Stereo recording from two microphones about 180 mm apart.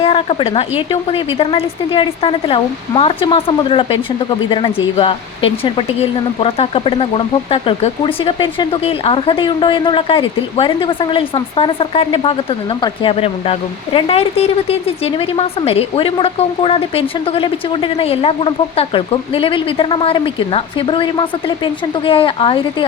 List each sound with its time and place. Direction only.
0.0 s speech: 30° left (ahead or behind)